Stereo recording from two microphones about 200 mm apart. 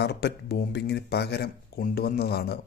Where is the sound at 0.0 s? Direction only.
55° left (ahead or behind).